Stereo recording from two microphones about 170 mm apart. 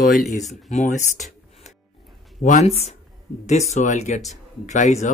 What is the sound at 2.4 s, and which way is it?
Speech, 45° left (ahead or behind).